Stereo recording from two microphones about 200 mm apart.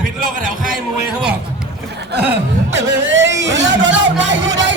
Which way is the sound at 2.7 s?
60° right (ahead or behind).